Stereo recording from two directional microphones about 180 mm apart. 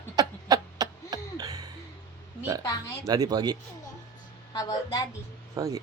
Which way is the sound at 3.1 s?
20° right (ahead or behind).